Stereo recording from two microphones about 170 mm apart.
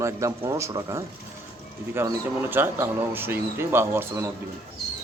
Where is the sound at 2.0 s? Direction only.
10° right (ahead or behind).